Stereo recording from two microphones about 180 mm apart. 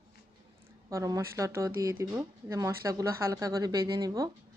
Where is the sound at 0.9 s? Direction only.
20° right (ahead or behind).